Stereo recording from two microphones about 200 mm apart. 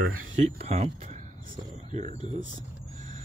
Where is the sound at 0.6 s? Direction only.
30° right (ahead or behind).